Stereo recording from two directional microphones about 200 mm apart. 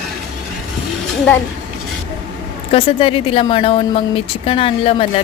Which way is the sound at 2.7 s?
30° left (ahead or behind).